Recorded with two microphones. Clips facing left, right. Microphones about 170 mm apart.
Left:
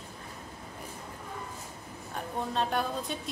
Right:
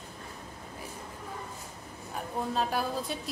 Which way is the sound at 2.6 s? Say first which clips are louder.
Left 1 dB; 5° right (ahead or behind).